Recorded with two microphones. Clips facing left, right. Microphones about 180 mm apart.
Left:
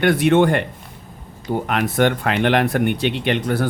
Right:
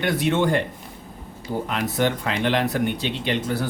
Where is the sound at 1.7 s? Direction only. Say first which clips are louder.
Left 5 dB; 65° left (ahead or behind).